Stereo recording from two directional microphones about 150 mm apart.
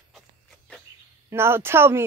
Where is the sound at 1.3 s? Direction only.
15° right (ahead or behind).